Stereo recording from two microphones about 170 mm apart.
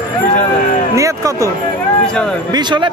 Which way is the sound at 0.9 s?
20° right (ahead or behind).